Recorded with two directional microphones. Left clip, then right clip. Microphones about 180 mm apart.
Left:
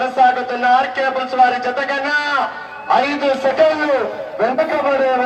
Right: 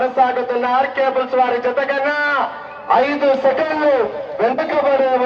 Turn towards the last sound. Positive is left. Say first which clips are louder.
# even
turn(degrees=60)  # may be behind; listen again after turning